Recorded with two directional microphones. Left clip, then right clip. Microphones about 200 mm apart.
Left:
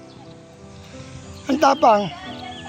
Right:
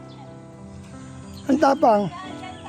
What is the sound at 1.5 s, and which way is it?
Speech, 30° right (ahead or behind).